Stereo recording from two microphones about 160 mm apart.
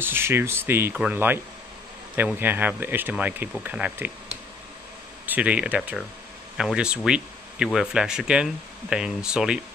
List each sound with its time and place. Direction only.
0.0 s speech: 15° right (ahead or behind)
5.2 s speech: 10° right (ahead or behind)